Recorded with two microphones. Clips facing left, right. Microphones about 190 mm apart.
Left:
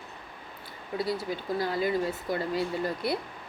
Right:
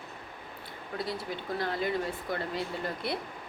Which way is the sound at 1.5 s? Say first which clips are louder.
Left 3 dB; 5° left (ahead or behind).